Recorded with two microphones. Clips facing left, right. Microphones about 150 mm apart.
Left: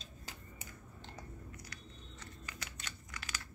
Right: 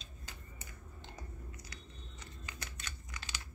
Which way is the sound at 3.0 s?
25° right (ahead or behind).